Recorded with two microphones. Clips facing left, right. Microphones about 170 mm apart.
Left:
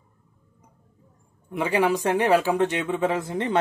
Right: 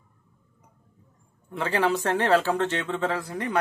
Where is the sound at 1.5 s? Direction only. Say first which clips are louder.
Left 2 dB; 15° left (ahead or behind).